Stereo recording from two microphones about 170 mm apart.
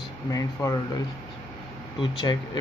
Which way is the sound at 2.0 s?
25° left (ahead or behind).